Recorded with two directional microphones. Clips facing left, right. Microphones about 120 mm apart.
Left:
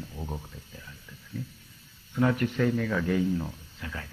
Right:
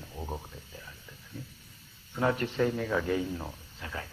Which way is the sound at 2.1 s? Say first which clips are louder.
Left 3 dB; 25° right (ahead or behind).